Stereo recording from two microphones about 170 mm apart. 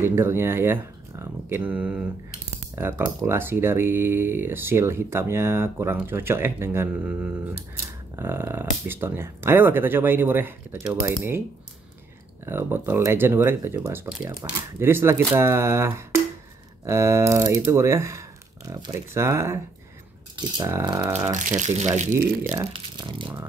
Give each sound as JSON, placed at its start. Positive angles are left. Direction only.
{"t": 0.0, "sound": "speech", "side_deg": -15}
{"t": 12.4, "sound": "speech", "side_deg": -15}
{"t": 21.3, "sound": "speech", "side_deg": -45}
{"t": 22.1, "sound": "speech", "side_deg": -15}
{"t": 22.9, "sound": "speech", "side_deg": -30}